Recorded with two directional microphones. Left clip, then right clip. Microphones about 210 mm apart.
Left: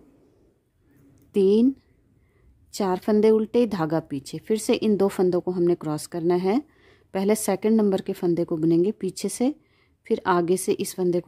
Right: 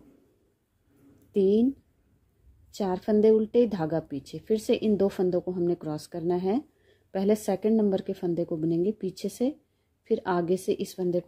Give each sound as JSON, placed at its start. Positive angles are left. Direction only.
{"t": 1.3, "sound": "speech", "side_deg": 30}
{"t": 2.7, "sound": "speech", "side_deg": 25}